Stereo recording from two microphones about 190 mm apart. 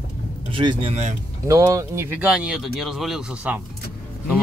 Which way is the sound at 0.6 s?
25° right (ahead or behind).